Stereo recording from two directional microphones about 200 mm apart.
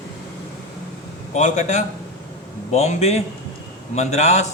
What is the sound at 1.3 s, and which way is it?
A man's voice, 35° left (ahead or behind).